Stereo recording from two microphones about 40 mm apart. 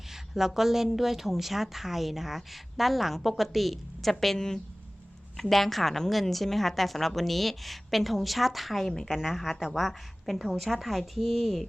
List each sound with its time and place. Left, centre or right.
0.1 s a woman's voice: centre
4.4 s a woman's voice: centre